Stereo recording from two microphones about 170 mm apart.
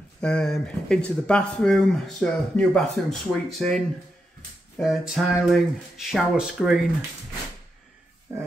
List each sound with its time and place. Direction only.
0.2 s speech: 5° left (ahead or behind)
8.3 s speech: 15° right (ahead or behind)